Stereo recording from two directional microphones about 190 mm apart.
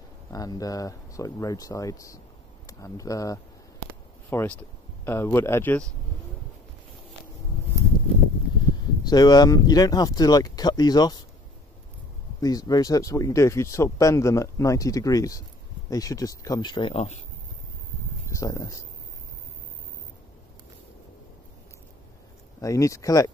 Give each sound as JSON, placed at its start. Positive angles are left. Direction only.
{"t": 0.3, "sound": "speech", "side_deg": 20}
{"t": 9.0, "sound": "speech", "side_deg": 20}
{"t": 12.4, "sound": "speech", "side_deg": 20}
{"t": 18.3, "sound": "speech", "side_deg": 15}
{"t": 22.6, "sound": "speech", "side_deg": 15}